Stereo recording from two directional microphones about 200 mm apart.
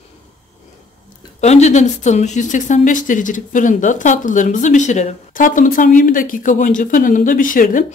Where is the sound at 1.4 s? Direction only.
35° left (ahead or behind).